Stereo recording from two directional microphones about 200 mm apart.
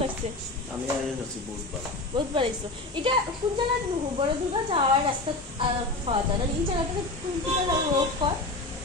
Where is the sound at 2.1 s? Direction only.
25° right (ahead or behind).